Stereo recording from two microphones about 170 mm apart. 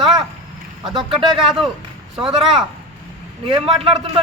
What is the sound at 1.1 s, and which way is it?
A man's voice, centre (ahead or behind).